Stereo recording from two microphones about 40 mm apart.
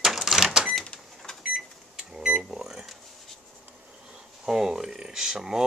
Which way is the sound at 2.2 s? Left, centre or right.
Centre.